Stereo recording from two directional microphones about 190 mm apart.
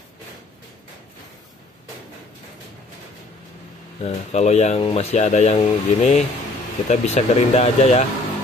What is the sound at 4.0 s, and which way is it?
Speech, 35° left (ahead or behind).